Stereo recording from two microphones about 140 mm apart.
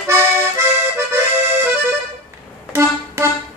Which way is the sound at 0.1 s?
20° right (ahead or behind).